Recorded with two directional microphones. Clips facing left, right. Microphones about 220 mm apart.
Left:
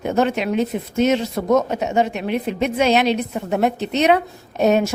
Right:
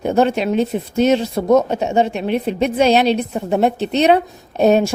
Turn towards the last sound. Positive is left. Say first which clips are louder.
# right 3 dB
turn(degrees=-30)  # may be behind; listen again after turning